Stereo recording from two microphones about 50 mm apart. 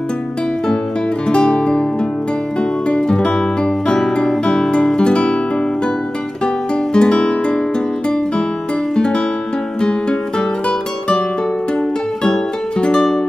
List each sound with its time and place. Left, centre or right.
1.3 s music: centre
2.9 s music: centre
6.4 s music: centre
8.9 s music: centre
12.2 s music: centre